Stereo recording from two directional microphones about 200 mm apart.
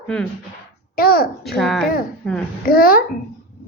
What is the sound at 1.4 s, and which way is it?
Speech, centre (ahead or behind).